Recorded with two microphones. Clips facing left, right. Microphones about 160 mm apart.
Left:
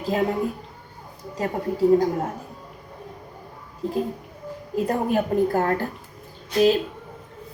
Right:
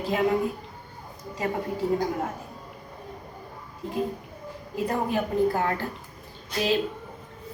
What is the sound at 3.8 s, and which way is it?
Speech, 35° left (ahead or behind).